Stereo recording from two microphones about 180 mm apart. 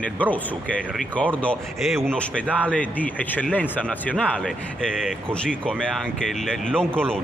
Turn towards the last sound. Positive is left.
turn(degrees=5)  # may be behind; listen again after turning